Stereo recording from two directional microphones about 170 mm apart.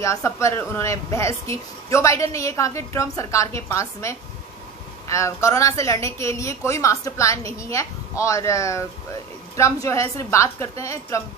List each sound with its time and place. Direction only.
0.0 s speech: 20° left (ahead or behind)